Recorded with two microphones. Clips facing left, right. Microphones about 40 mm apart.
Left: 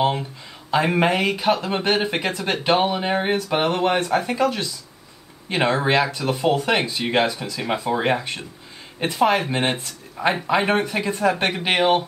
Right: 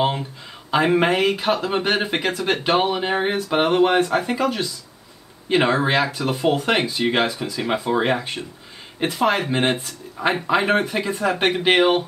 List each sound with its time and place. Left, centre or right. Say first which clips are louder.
0.7 s speech: right 1 dB; centre
2.6 s speech: left 2 dB; centre
3.3 s speech: right 3 dB; centre
3.9 s speech: right 2 dB; centre
10.2 s speech: even; centre